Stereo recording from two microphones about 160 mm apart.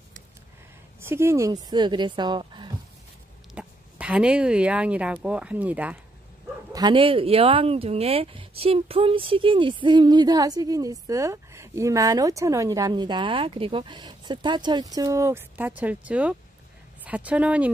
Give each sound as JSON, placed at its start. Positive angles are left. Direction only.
{"t": 1.0, "sound": "speech", "side_deg": -15}
{"t": 3.5, "sound": "speech", "side_deg": -5}
{"t": 6.7, "sound": "speech", "side_deg": -30}